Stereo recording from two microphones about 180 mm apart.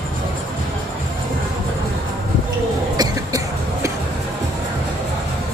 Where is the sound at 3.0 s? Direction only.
20° right (ahead or behind).